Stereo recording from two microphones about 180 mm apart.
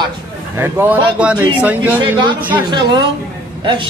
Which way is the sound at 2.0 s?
25° right (ahead or behind).